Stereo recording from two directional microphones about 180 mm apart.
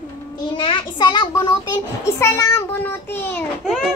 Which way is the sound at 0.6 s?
25° left (ahead or behind).